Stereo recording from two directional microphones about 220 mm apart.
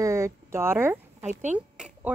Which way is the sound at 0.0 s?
15° right (ahead or behind).